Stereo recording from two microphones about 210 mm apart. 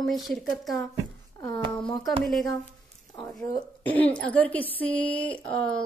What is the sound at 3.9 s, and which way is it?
A woman's voice, 5° left (ahead or behind).